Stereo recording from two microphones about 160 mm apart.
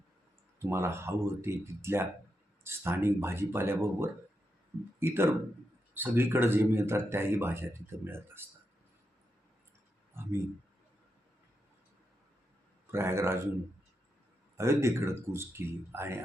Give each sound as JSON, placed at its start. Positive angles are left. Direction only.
{"t": 0.6, "sound": "speech", "side_deg": -15}
{"t": 12.9, "sound": "speech", "side_deg": -15}
{"t": 14.5, "sound": "speech", "side_deg": -15}